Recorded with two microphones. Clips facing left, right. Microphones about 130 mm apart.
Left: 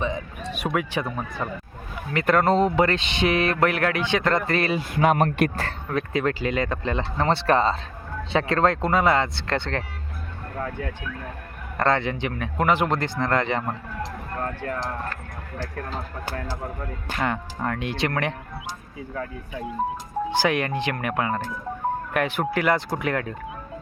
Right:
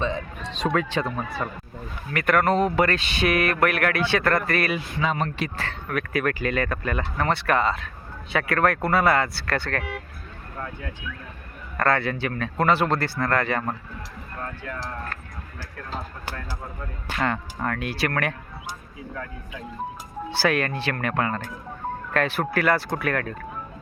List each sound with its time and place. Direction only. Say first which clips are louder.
0.0 s speech: even; 15° left (ahead or behind)
2.1 s speech: left 1 dB; 25° left (ahead or behind)
4.9 s speech: left 8 dB; 55° left (ahead or behind)
5.9 s speech: left 1 dB; 25° left (ahead or behind)
11.8 s speech: left 1 dB; 20° left (ahead or behind)
13.9 s a sound: left 6 dB; 60° left (ahead or behind)
17.2 s speech: right 1 dB; 15° left (ahead or behind)
20.3 s speech: even; 15° left (ahead or behind)